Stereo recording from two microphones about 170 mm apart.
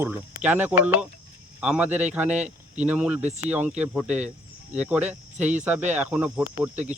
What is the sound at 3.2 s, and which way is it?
Speech, 40° right (ahead or behind).